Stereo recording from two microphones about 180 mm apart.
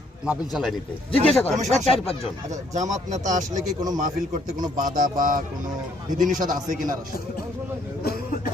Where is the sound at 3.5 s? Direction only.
20° right (ahead or behind).